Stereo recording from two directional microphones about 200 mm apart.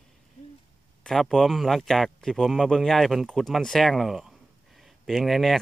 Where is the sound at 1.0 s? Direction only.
Centre (ahead or behind).